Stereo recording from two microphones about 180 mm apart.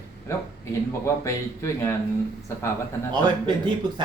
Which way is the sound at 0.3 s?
15° left (ahead or behind).